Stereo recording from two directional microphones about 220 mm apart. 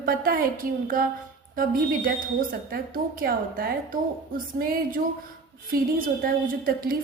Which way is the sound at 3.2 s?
40° right (ahead or behind).